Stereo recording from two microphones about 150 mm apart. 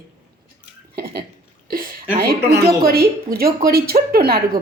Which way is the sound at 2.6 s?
90° right.